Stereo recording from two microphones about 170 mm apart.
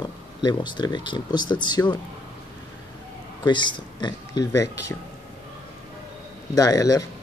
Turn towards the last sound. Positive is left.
turn(degrees=20)  # may be behind; listen again after turning